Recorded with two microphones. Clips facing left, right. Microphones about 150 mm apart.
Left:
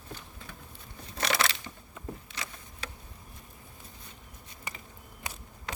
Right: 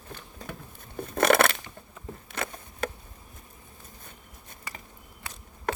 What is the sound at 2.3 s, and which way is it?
Insect, 55° right (ahead or behind).